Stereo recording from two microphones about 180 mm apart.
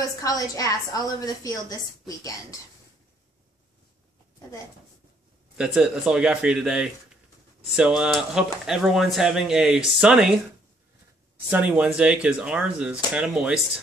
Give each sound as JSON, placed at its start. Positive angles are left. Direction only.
{"t": 0.0, "sound": "a woman's voice", "side_deg": 20}
{"t": 5.6, "sound": "speech", "side_deg": -5}
{"t": 11.3, "sound": "speech", "side_deg": -10}